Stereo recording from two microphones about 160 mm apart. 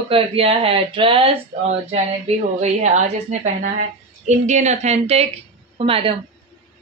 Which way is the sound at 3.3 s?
45° right (ahead or behind).